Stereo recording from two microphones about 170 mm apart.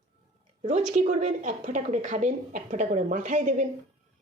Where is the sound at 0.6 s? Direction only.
45° right (ahead or behind).